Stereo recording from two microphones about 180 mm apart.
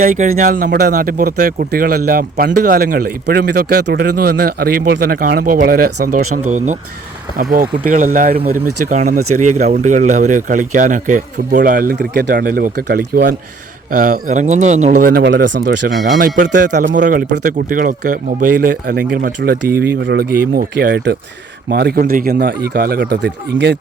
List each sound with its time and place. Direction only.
0.0 s speech: 50° right (ahead or behind)
7.5 s speech: 50° right (ahead or behind)
13.9 s speech: 50° right (ahead or behind)
15.2 s speech: 90° right
16.1 s speech: 45° right (ahead or behind); by 23.7 s 70° right (ahead or behind)